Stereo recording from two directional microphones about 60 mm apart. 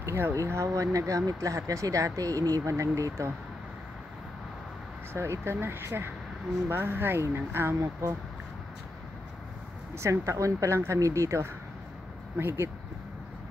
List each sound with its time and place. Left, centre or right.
0.0 s speech: right
2.7 s speech: right
5.1 s speech: right
9.9 s speech: right
12.4 s speech: right